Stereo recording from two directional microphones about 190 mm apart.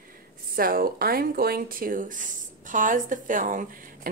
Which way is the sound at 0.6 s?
50° right (ahead or behind).